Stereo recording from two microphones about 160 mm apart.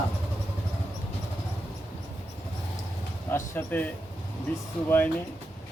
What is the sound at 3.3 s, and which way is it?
Speech, 15° left (ahead or behind).